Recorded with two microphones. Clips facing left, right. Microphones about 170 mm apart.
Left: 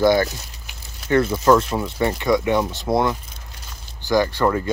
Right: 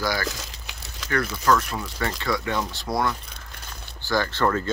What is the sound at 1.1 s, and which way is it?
Speech, 25° left (ahead or behind).